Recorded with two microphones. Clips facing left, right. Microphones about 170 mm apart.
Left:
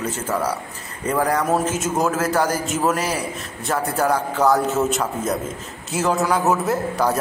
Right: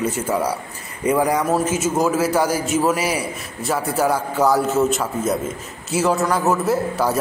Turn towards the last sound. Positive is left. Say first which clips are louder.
# right 1 dB
turn(degrees=-5)  # may be behind; listen again after turning